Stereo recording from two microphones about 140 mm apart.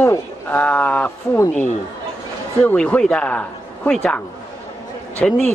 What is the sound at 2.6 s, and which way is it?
A man's voice, 10° left (ahead or behind).